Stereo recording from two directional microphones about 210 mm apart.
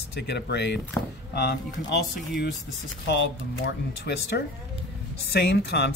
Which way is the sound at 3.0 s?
60° left (ahead or behind).